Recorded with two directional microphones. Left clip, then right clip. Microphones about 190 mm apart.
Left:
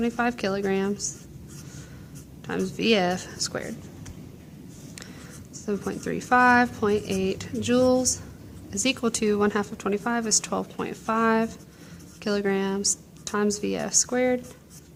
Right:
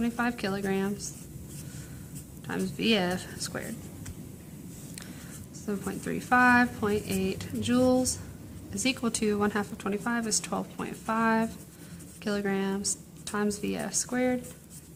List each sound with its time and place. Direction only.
0.0 s speech: 35° left (ahead or behind)
2.5 s speech: 35° left (ahead or behind)
5.6 s speech: 35° left (ahead or behind)